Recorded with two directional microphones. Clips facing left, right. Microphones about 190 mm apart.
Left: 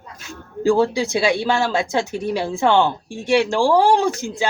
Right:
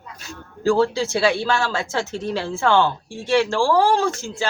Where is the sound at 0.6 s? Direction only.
15° left (ahead or behind).